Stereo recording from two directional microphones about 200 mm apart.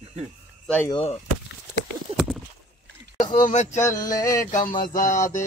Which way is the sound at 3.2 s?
40° left (ahead or behind).